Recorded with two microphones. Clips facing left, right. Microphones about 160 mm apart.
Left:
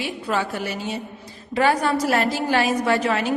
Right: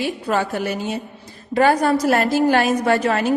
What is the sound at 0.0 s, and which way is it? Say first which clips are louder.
A woman's voice: right 4 dB; 45° right (ahead or behind).